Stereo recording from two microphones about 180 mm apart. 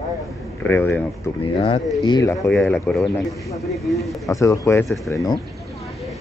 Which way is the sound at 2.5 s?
5° left (ahead or behind).